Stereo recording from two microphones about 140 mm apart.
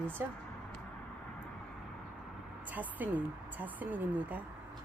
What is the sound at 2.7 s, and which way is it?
A woman's voice, 10° right (ahead or behind).